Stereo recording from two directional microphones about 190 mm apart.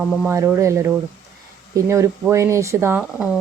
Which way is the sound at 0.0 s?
Centre (ahead or behind).